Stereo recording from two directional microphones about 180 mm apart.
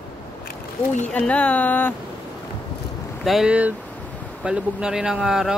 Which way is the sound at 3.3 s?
5° right (ahead or behind).